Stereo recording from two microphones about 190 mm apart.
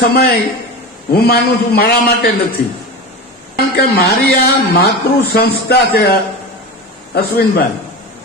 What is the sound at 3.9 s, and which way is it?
A man's voice, 55° left (ahead or behind).